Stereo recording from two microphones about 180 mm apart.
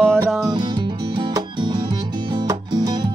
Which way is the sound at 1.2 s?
25° right (ahead or behind).